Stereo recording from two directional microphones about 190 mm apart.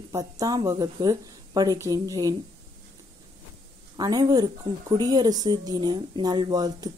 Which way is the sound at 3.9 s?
20° right (ahead or behind).